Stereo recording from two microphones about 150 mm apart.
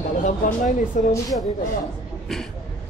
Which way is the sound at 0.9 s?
60° left (ahead or behind).